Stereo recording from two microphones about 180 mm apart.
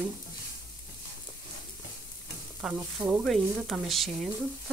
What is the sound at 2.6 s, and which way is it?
Stir, 5° right (ahead or behind).